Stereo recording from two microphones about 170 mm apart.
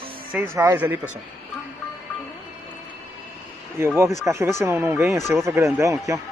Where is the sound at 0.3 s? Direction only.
10° right (ahead or behind).